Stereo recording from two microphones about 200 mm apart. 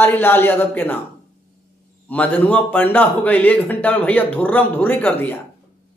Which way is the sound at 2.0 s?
5° left (ahead or behind).